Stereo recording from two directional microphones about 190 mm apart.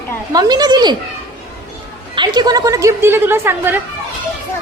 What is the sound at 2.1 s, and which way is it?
A woman's voice, 25° right (ahead or behind).